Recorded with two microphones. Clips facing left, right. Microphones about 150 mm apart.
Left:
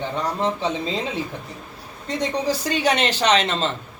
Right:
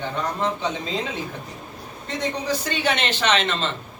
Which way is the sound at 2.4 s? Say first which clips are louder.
Left 3 dB; 35° left (ahead or behind).